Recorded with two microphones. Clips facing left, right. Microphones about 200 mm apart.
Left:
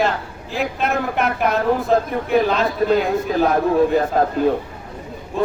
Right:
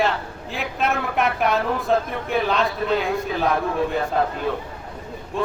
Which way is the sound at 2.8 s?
40° left (ahead or behind).